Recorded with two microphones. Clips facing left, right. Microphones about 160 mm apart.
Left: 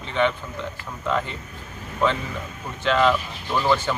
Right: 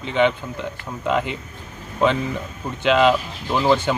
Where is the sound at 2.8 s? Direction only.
15° right (ahead or behind).